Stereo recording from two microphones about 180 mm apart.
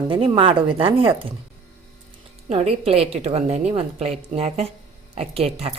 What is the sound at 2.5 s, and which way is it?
A woman's voice, 35° right (ahead or behind).